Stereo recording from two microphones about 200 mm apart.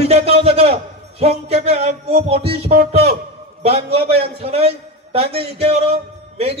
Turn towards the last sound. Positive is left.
turn(degrees=-30)  # may be behind; listen again after turning